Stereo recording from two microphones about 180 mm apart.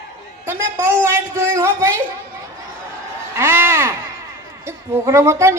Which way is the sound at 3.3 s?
15° right (ahead or behind).